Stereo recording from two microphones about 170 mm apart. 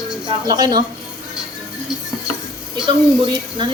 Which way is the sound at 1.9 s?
5° right (ahead or behind).